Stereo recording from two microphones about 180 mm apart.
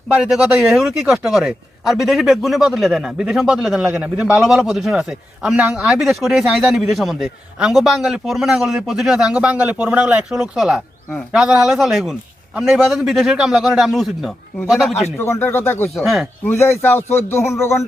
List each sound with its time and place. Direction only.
0.1 s speech: 5° right (ahead or behind)
15.2 s speech: 10° left (ahead or behind)
16.0 s speech: centre (ahead or behind)
16.6 s speech: 15° left (ahead or behind)